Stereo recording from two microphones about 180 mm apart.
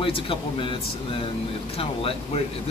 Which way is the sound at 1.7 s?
30° left (ahead or behind).